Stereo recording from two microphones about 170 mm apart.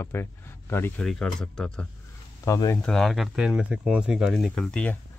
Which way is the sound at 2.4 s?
20° left (ahead or behind).